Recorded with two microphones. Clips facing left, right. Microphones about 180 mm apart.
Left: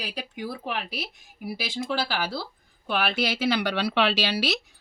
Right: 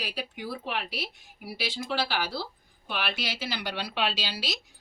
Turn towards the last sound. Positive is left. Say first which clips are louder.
# left 7 dB
turn(degrees=70)  # may be behind; listen again after turning